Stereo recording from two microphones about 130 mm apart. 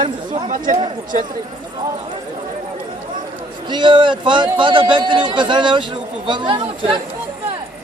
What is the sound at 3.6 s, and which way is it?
Speech, 35° right (ahead or behind).